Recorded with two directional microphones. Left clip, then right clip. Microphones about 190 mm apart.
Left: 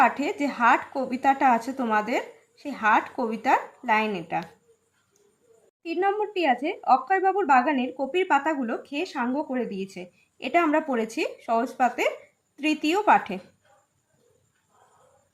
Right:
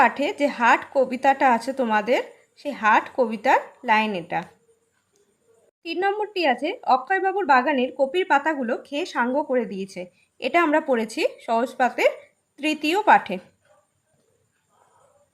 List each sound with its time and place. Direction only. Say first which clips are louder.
0.2 s speech: right 3 dB; 40° right (ahead or behind)
5.8 s speech: right 1 dB; 40° right (ahead or behind)